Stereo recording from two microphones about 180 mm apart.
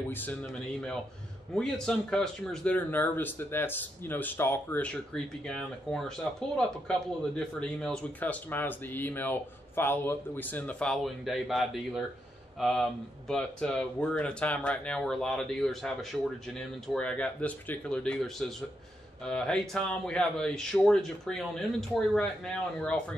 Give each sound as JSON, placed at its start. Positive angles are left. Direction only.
{"t": 0.1, "sound": "speech", "side_deg": 10}